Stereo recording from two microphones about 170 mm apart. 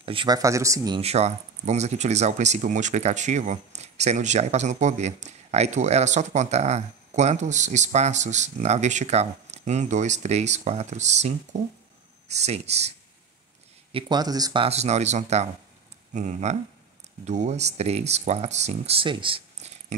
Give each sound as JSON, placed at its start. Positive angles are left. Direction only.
{"t": 0.0, "sound": "speech", "side_deg": -30}
{"t": 1.0, "sound": "speech", "side_deg": -40}
{"t": 13.9, "sound": "speech", "side_deg": -25}
{"t": 19.9, "sound": "speech", "side_deg": -45}